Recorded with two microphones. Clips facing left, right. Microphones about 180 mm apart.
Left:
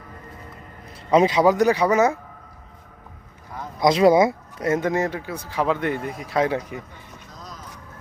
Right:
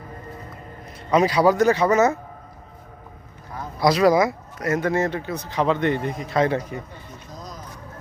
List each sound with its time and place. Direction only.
1.1 s speech: 25° left (ahead or behind)
3.8 s speech: 25° left (ahead or behind)
4.9 s speech: 15° left (ahead or behind)